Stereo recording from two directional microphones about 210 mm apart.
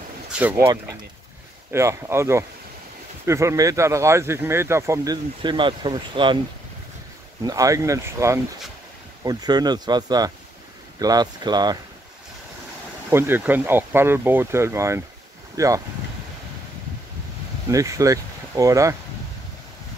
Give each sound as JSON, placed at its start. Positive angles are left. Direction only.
{"t": 0.4, "sound": "speech", "side_deg": -10}
{"t": 7.4, "sound": "speech", "side_deg": -15}
{"t": 13.1, "sound": "speech", "side_deg": -10}
{"t": 17.6, "sound": "speech", "side_deg": -15}